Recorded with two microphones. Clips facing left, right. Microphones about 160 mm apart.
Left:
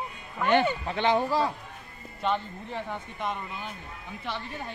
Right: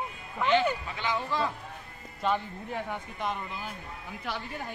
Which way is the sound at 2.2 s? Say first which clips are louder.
Even; 5° right (ahead or behind).